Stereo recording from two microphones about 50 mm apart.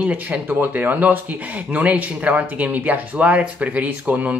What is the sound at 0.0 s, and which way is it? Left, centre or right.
Speech, right.